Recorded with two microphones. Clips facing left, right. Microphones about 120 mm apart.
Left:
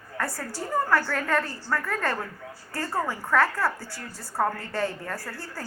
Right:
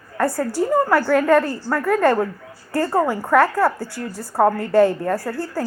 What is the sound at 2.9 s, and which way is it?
A woman's voice, 50° right (ahead or behind).